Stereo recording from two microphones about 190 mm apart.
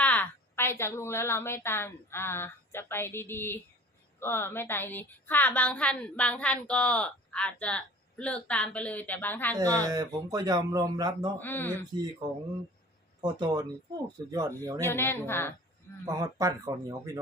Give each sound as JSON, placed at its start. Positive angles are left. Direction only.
{"t": 0.0, "sound": "a woman's voice", "side_deg": 10}
{"t": 9.6, "sound": "speech", "side_deg": -20}
{"t": 11.3, "sound": "a woman's voice", "side_deg": 10}
{"t": 13.2, "sound": "speech", "side_deg": -20}
{"t": 14.8, "sound": "a woman's voice", "side_deg": 10}
{"t": 16.0, "sound": "speech", "side_deg": -20}